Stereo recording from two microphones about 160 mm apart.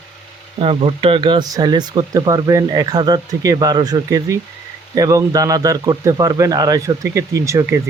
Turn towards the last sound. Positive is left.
turn(degrees=-20)  # may be behind; listen again after turning